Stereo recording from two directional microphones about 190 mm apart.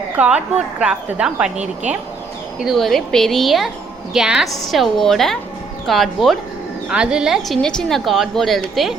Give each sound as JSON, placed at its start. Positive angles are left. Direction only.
{"t": 0.2, "sound": "a woman's voice", "side_deg": -5}
{"t": 1.5, "sound": "a woman's voice", "side_deg": -40}
{"t": 2.6, "sound": "a woman's voice", "side_deg": 0}